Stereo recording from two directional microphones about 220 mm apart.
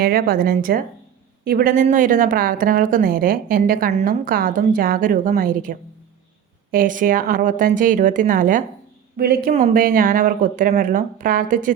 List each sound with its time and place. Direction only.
0.0 s a woman's voice: 40° right (ahead or behind)